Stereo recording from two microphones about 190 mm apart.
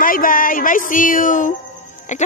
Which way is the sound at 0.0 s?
50° left (ahead or behind).